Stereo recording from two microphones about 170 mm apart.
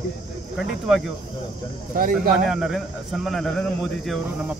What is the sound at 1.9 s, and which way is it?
Speech, 55° right (ahead or behind).